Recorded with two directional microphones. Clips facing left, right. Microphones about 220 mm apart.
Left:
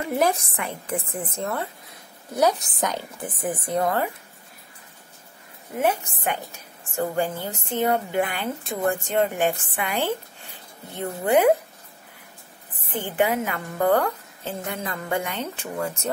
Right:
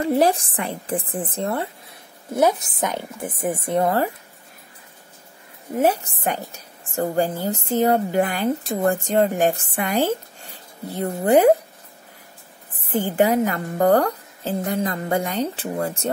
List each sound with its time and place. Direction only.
0.0 s a woman's voice: 30° right (ahead or behind)
5.8 s a woman's voice: 35° right (ahead or behind)
13.0 s a woman's voice: 40° right (ahead or behind)